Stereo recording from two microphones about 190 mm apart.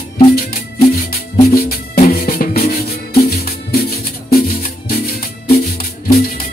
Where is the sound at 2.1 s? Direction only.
50° left (ahead or behind).